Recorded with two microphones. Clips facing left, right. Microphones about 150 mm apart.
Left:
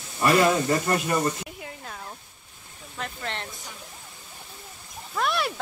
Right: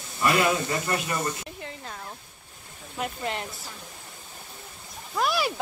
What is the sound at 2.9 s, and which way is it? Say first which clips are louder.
Speech: right 3 dB; 10° right (ahead or behind).